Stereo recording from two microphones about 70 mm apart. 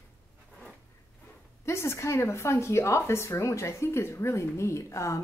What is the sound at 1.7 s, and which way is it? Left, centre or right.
A woman's voice, left.